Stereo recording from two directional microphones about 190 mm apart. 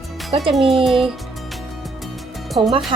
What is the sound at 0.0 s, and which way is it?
Music, centre (ahead or behind).